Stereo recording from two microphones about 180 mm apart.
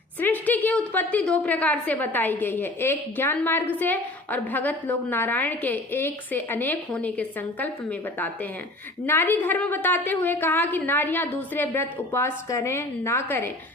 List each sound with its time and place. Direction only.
0.2 s a woman's voice: 10° left (ahead or behind)